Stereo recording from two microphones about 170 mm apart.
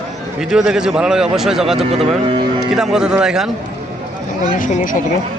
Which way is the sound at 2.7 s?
5° right (ahead or behind).